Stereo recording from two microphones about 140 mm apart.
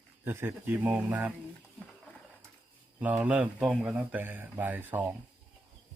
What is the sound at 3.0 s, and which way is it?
Speech, 10° right (ahead or behind).